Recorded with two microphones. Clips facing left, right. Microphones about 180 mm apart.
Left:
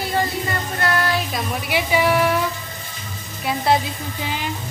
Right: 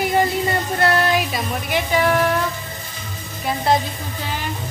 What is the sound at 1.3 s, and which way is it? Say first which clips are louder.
A woman's voice: right 1 dB; 5° left (ahead or behind).